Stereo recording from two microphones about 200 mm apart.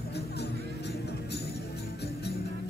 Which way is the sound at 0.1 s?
55° left (ahead or behind).